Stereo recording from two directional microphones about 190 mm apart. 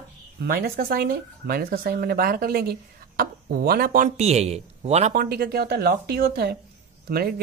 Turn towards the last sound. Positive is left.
turn(degrees=-55)  # may be behind; listen again after turning